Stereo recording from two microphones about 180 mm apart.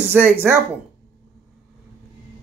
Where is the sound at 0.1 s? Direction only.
10° right (ahead or behind).